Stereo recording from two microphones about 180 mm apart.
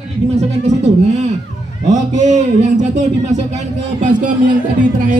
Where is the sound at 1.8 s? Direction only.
40° right (ahead or behind).